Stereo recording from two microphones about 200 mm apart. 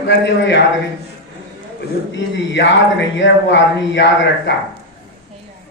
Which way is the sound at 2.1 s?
65° left (ahead or behind).